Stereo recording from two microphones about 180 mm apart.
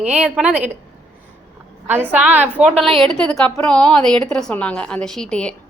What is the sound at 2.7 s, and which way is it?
Speech, 35° right (ahead or behind).